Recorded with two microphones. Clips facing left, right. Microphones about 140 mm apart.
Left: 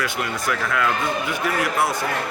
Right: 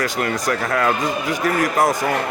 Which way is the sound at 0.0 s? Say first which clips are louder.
Right 4 dB; 40° right (ahead or behind).